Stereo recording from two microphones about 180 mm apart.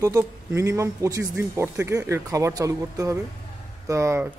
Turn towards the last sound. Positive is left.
turn(degrees=-15)  # may be behind; listen again after turning